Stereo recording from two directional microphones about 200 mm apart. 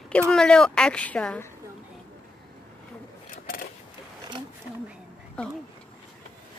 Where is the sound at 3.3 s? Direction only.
45° left (ahead or behind).